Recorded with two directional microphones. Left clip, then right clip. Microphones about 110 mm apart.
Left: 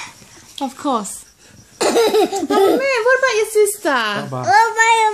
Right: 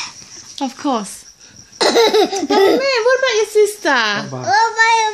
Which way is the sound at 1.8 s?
5° right (ahead or behind).